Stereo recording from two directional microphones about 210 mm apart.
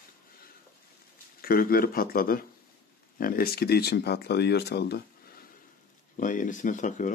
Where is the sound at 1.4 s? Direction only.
45° left (ahead or behind).